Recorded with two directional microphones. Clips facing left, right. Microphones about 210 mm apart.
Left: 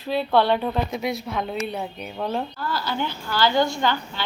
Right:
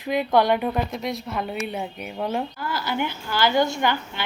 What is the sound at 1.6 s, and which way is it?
A woman's voice, 10° right (ahead or behind).